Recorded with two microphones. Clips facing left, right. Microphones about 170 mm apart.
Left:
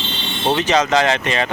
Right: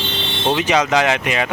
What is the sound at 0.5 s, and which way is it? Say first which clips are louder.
Speech: left 1 dB; 10° right (ahead or behind).